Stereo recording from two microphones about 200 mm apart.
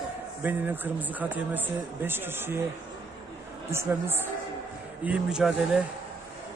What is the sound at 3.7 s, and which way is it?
Speech, 10° right (ahead or behind).